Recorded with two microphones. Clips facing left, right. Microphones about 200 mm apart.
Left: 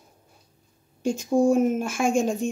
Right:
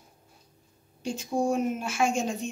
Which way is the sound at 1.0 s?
45° left (ahead or behind).